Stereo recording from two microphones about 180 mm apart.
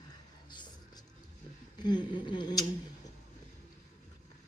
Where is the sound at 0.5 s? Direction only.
25° left (ahead or behind).